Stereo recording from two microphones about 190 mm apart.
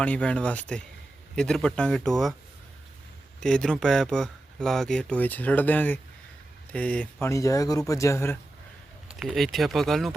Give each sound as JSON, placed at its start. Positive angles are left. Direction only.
{"t": 0.0, "sound": "speech", "side_deg": 5}
{"t": 3.4, "sound": "speech", "side_deg": 5}
{"t": 9.0, "sound": "speech", "side_deg": -5}